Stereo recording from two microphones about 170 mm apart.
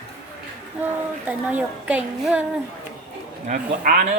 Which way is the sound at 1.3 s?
10° right (ahead or behind).